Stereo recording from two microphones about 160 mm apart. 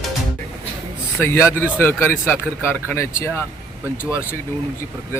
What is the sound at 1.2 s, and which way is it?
Speech, 15° left (ahead or behind).